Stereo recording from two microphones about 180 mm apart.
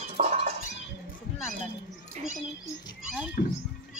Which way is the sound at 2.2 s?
40° right (ahead or behind).